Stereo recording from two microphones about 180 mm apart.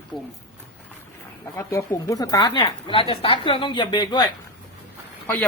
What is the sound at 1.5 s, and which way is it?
A woman's voice, 15° left (ahead or behind).